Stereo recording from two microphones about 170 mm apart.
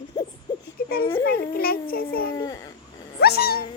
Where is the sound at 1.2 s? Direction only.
60° left (ahead or behind).